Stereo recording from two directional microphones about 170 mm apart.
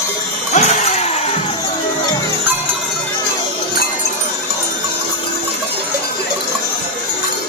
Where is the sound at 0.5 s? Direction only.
45° left (ahead or behind).